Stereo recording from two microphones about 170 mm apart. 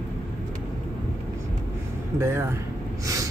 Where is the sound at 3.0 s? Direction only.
20° right (ahead or behind).